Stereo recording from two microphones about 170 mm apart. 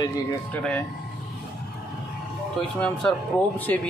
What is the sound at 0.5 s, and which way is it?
Speech, 5° left (ahead or behind).